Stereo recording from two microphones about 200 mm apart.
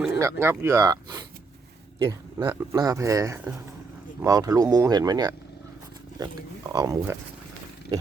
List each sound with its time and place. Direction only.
0.2 s speech: 15° right (ahead or behind)